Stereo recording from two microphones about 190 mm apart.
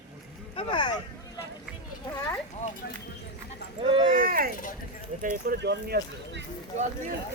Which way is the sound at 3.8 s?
25° right (ahead or behind).